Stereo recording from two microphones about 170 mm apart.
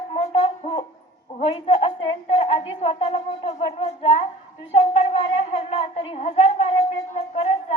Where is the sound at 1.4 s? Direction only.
35° left (ahead or behind).